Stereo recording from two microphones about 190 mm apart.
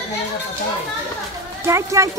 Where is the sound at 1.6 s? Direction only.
15° right (ahead or behind).